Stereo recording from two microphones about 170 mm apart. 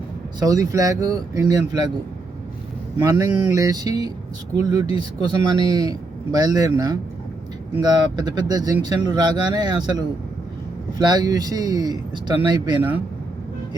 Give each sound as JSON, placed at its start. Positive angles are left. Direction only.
{"t": 0.3, "sound": "speech", "side_deg": -20}
{"t": 3.0, "sound": "speech", "side_deg": -20}